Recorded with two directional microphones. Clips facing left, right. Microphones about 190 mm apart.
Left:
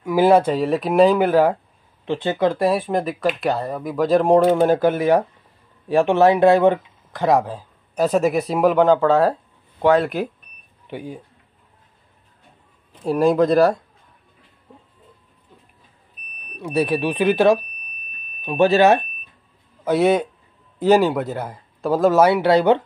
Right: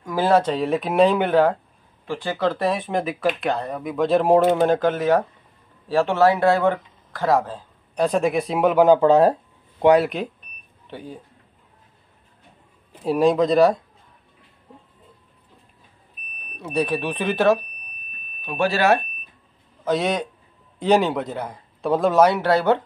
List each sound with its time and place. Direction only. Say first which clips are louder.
0.0 s speech: left 4 dB; 10° left (ahead or behind)
2.0 s speech: left 4 dB; 20° left (ahead or behind); by 8.8 s centre (ahead or behind)
8.8 s speech: right 1 dB; 15° right (ahead or behind)
10.0 s speech: left 2 dB; 5° left (ahead or behind)
13.0 s speech: left 1 dB; centre (ahead or behind)
16.5 s speech: left 3 dB; 5° left (ahead or behind); by 18.9 s 20° left (ahead or behind)
19.8 s a man's voice: left 5 dB; 10° left (ahead or behind)